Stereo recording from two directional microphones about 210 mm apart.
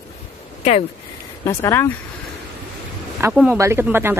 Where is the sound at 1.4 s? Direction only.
15° left (ahead or behind).